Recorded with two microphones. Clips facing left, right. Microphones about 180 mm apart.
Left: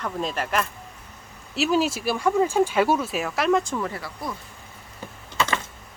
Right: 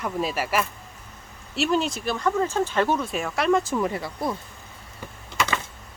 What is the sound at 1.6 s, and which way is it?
Speech, 5° left (ahead or behind).